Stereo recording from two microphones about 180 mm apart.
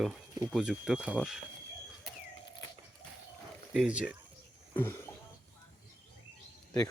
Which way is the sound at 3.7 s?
5° right (ahead or behind).